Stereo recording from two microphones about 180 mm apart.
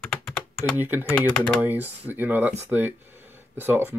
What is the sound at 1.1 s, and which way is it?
Speech, 5° left (ahead or behind).